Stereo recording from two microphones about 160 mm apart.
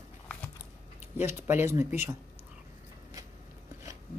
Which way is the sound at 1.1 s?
15° right (ahead or behind).